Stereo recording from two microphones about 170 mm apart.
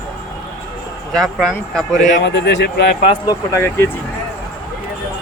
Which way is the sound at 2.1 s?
90° left.